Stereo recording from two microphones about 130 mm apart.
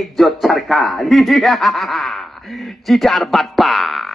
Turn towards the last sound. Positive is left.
turn(degrees=0)  # may be behind; listen again after turning